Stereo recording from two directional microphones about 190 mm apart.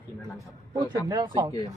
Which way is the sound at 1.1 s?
20° right (ahead or behind).